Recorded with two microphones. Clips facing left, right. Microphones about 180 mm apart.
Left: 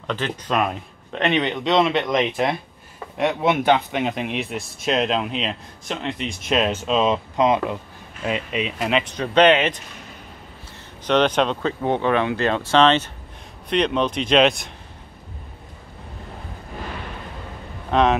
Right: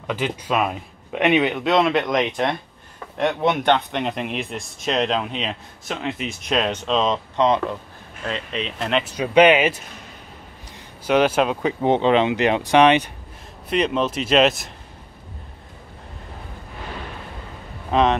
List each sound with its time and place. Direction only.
0.0 s speech: 10° right (ahead or behind)
9.0 s speech: 10° right (ahead or behind)
11.1 s speech: 10° right (ahead or behind)
11.8 s speech: 20° right (ahead or behind); by 14.7 s centre (ahead or behind)
17.9 s speech: 5° right (ahead or behind)